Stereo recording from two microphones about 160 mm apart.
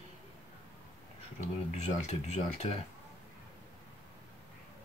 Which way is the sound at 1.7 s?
45° left (ahead or behind).